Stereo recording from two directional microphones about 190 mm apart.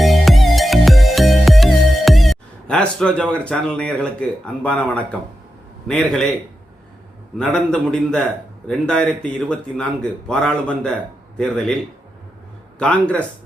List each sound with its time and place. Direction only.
0.0 s music: centre (ahead or behind)
3.3 s a man's voice: 5° left (ahead or behind)
7.3 s a man's voice: 5° left (ahead or behind)
12.8 s speech: 5° left (ahead or behind)